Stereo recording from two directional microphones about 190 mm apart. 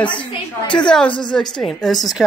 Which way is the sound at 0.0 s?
5° left (ahead or behind).